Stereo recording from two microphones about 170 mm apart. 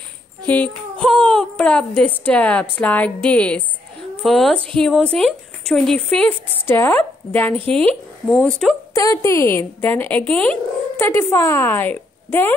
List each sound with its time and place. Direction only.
0.5 s a woman's voice: 10° left (ahead or behind)
8.9 s a woman's voice: 20° left (ahead or behind)